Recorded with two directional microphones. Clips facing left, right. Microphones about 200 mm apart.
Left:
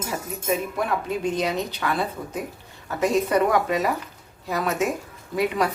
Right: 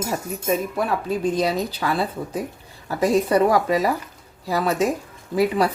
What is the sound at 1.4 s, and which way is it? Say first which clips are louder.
Speech: right 3 dB; 35° right (ahead or behind).